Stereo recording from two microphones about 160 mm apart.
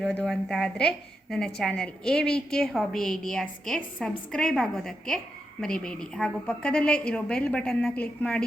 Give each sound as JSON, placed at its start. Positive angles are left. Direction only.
{"t": 0.2, "sound": "a woman's voice", "side_deg": 0}